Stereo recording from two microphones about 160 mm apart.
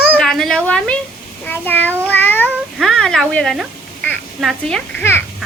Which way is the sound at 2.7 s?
Centre (ahead or behind).